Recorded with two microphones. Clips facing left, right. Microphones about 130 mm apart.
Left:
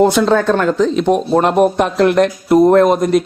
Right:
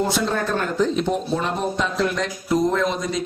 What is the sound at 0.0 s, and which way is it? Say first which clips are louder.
Speech: left 11 dB; 80° left.